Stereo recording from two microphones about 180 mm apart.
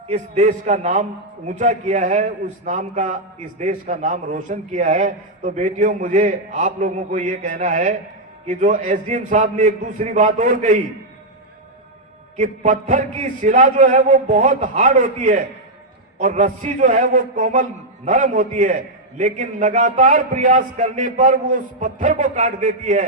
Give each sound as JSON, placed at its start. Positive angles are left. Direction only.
{"t": 0.1, "sound": "a man's voice", "side_deg": -40}
{"t": 12.4, "sound": "a man's voice", "side_deg": -45}